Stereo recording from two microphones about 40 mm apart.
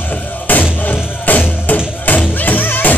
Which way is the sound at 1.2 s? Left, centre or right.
Left.